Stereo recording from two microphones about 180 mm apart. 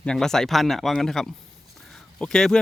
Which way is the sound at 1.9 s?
5° left (ahead or behind).